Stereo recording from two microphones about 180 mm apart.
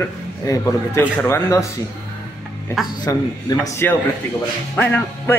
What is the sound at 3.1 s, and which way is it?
Speech, 20° left (ahead or behind).